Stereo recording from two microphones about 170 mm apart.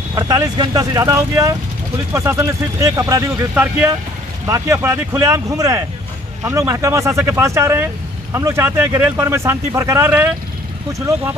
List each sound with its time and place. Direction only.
0.1 s speech: 20° right (ahead or behind)